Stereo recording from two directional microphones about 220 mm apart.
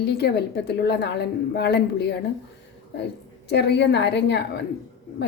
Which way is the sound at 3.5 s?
50° left (ahead or behind).